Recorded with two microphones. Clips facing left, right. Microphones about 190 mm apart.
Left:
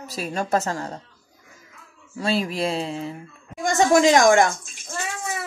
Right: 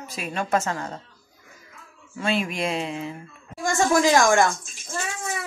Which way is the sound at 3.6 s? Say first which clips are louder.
Left 3 dB; 20° left (ahead or behind).